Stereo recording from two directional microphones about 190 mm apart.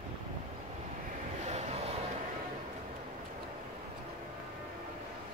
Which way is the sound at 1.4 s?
35° right (ahead or behind).